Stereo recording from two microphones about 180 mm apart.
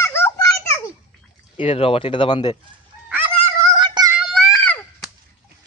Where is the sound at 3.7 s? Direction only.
25° right (ahead or behind).